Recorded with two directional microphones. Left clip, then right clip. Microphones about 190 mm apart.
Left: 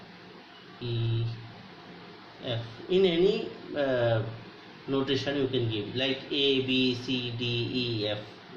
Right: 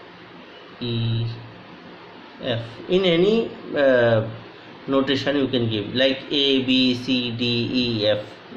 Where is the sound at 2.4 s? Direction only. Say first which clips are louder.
Right 9 dB; 55° right (ahead or behind).